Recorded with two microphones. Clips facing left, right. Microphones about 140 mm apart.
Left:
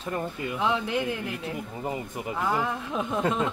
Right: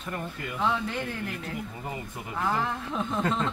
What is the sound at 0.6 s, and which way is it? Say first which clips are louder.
Speech: left 2 dB; 10° left (ahead or behind).